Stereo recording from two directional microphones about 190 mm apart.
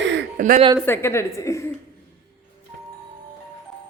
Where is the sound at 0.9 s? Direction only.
15° left (ahead or behind).